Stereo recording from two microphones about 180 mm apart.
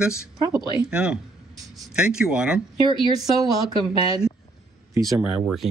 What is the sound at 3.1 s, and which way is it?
Speech, 20° right (ahead or behind).